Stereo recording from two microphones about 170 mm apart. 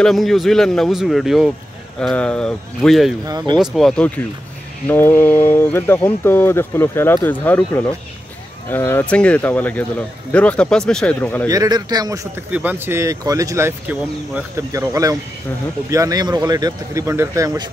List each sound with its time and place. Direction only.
0.0 s speech: centre (ahead or behind)
3.3 s speech: 25° right (ahead or behind)
3.5 s speech: centre (ahead or behind)
4.8 s speech: 15° left (ahead or behind)
11.4 s speech: 20° right (ahead or behind)
12.4 s speech: 10° right (ahead or behind)